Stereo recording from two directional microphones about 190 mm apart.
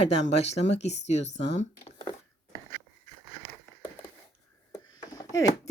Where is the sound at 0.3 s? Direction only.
35° left (ahead or behind).